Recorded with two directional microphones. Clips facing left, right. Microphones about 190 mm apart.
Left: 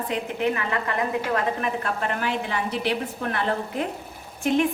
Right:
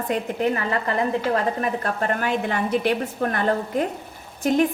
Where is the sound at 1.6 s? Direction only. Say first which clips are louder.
Right 2 dB; 45° right (ahead or behind).